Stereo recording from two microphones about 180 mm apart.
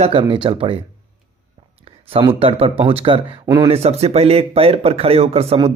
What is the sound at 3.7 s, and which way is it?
Speech, 35° right (ahead or behind).